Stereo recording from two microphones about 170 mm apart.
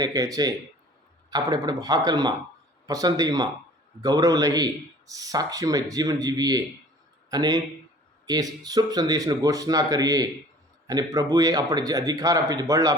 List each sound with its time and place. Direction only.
0.0 s speech: 20° right (ahead or behind)